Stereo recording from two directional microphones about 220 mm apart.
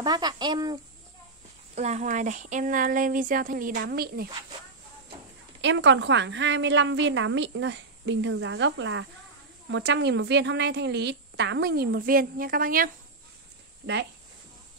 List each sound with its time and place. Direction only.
0.0 s a child's voice: 20° right (ahead or behind)
1.8 s a sound: 30° right (ahead or behind)
5.6 s a woman's voice: 55° right (ahead or behind); by 12.9 s 40° right (ahead or behind)